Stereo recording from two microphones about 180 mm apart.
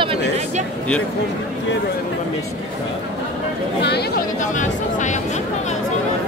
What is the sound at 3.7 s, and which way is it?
Chatter, 65° left (ahead or behind).